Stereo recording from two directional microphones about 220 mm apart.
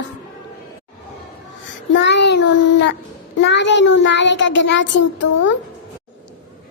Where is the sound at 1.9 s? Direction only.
50° left (ahead or behind).